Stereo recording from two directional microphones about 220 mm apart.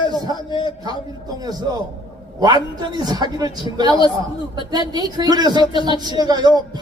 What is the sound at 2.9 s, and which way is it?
A man's voice, 20° right (ahead or behind).